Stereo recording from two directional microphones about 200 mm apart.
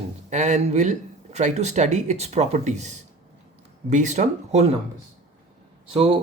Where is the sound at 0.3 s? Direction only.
35° right (ahead or behind).